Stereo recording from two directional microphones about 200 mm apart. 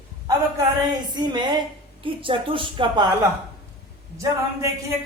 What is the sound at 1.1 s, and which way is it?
A woman's voice, 20° right (ahead or behind).